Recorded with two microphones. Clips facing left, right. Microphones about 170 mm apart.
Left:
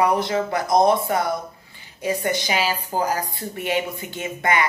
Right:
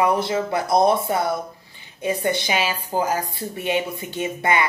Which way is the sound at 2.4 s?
25° right (ahead or behind).